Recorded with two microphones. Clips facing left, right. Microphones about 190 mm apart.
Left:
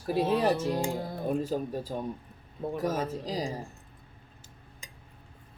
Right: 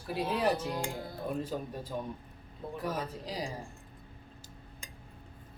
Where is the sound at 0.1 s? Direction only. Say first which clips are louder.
Left 5 dB; 45° left (ahead or behind).